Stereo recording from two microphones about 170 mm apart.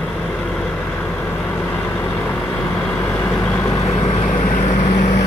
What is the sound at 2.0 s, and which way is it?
Vehicle, 10° left (ahead or behind).